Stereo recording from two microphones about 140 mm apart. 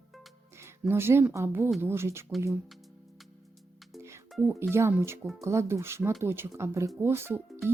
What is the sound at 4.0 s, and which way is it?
Music, 20° right (ahead or behind).